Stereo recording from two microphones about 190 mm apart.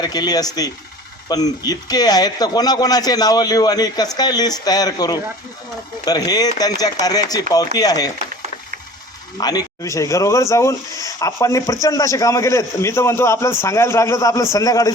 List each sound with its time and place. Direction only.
0.0 s a man's voice: 20° left (ahead or behind)
9.4 s speech: 20° left (ahead or behind)